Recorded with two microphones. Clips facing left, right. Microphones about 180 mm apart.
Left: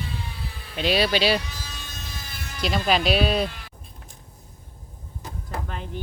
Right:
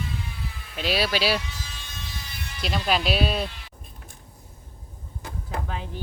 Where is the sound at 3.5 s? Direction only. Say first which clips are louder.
Left 4 dB; 50° left (ahead or behind).